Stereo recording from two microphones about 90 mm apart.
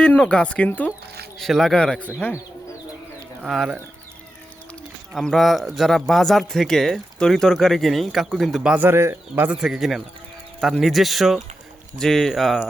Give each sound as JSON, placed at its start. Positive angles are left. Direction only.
{"t": 0.0, "sound": "speech", "side_deg": 10}
{"t": 1.4, "sound": "speech", "side_deg": 5}
{"t": 3.4, "sound": "speech", "side_deg": -5}
{"t": 5.2, "sound": "speech", "side_deg": 0}
{"t": 8.7, "sound": "speech", "side_deg": -25}
{"t": 9.5, "sound": "speech", "side_deg": -10}